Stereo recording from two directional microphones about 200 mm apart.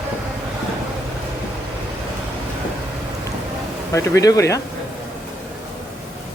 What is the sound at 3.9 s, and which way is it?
Speech, 15° left (ahead or behind).